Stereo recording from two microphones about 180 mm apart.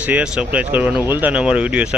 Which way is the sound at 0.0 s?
5° right (ahead or behind).